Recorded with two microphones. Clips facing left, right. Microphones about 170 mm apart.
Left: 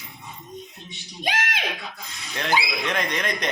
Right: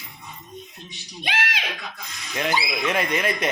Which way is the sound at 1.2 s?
45° left (ahead or behind).